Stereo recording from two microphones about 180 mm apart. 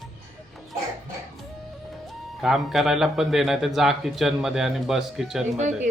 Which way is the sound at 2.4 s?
Centre (ahead or behind).